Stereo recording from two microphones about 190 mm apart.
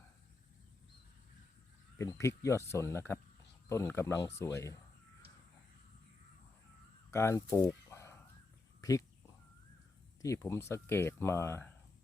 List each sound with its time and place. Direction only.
2.0 s speech: 15° left (ahead or behind)
7.1 s a sound: 15° left (ahead or behind)
8.8 s speech: 20° left (ahead or behind)
10.2 s speech: 15° left (ahead or behind)